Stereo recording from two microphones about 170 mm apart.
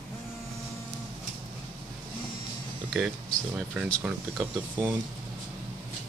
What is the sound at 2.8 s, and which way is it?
Speech, centre (ahead or behind).